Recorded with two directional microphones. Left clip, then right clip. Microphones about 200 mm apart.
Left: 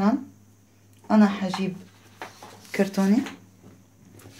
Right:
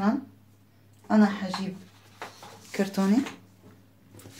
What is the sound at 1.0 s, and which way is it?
Speech, 40° left (ahead or behind).